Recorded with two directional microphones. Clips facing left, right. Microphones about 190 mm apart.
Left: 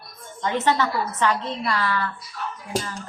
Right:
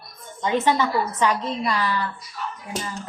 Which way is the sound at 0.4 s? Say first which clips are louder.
Right 1 dB; 15° right (ahead or behind).